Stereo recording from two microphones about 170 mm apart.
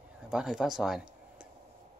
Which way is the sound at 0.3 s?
5° right (ahead or behind).